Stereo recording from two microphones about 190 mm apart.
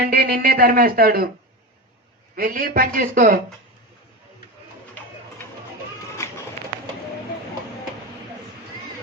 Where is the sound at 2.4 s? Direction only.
50° right (ahead or behind).